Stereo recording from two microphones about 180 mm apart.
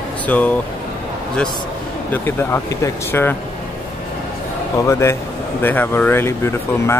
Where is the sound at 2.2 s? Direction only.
15° left (ahead or behind).